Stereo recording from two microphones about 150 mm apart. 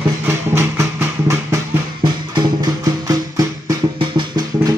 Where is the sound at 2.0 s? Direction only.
30° right (ahead or behind).